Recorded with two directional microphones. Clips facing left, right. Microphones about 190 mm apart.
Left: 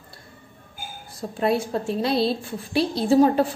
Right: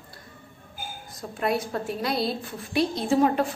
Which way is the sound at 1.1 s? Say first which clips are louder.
Left 4 dB; 30° left (ahead or behind).